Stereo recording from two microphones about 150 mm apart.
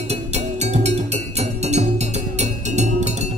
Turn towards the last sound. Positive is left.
turn(degrees=-50)  # may be behind; listen again after turning